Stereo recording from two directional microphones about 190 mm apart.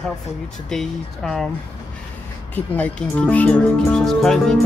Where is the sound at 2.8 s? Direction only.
5° left (ahead or behind).